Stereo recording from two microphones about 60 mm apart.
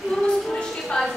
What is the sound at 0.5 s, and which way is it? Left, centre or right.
Music, centre.